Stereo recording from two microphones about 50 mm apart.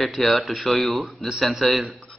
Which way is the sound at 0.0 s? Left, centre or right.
Centre.